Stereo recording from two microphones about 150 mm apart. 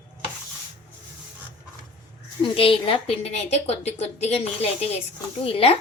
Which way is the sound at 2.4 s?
35° left (ahead or behind).